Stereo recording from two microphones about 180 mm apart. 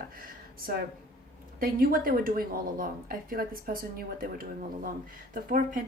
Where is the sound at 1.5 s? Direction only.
50° right (ahead or behind).